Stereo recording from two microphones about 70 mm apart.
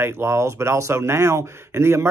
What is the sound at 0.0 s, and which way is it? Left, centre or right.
Speech, right.